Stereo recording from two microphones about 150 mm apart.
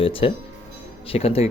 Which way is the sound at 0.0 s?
35° left (ahead or behind).